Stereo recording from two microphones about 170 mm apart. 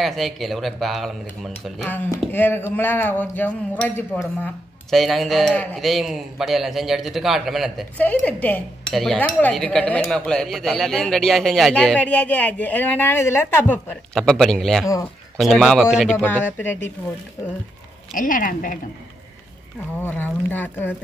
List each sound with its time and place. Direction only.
0.0 s a man's voice: centre (ahead or behind)
4.9 s a man's voice: centre (ahead or behind)
8.0 s a man's voice: 10° left (ahead or behind)
16.2 s speech: 10° left (ahead or behind)
18.1 s speech: 50° left (ahead or behind)
20.0 s speech: 10° left (ahead or behind)